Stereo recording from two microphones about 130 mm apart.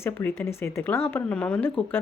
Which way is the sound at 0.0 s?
20° left (ahead or behind).